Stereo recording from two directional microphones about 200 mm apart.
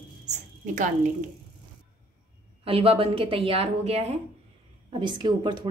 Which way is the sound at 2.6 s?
30° right (ahead or behind).